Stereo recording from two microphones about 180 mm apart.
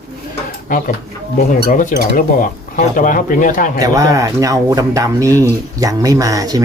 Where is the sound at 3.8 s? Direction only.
20° right (ahead or behind).